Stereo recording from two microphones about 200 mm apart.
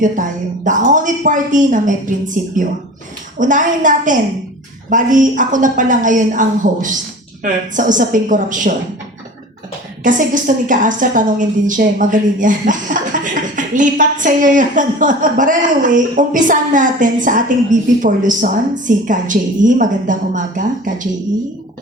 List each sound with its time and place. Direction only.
0.0 s a woman's voice: 40° right (ahead or behind)
10.0 s a woman's voice: 40° right (ahead or behind)